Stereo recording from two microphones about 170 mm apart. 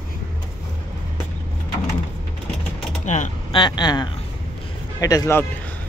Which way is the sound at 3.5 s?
25° left (ahead or behind).